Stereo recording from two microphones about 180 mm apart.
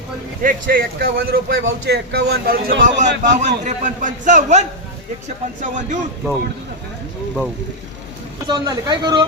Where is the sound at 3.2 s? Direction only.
45° right (ahead or behind).